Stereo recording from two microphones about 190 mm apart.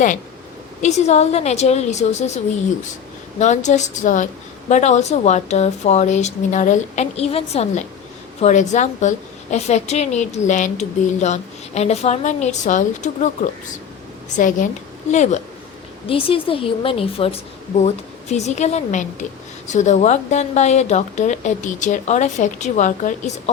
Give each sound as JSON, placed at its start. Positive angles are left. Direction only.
{"t": 0.8, "sound": "a woman's voice", "side_deg": 35}